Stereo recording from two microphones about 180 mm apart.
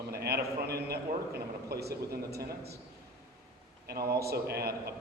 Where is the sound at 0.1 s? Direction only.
60° right (ahead or behind).